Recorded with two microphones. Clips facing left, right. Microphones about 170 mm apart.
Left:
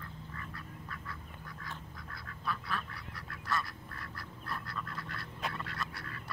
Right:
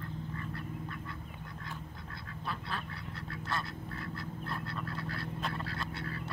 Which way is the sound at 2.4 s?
30° right (ahead or behind).